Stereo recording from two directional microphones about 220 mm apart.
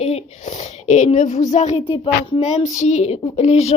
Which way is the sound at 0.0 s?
30° left (ahead or behind).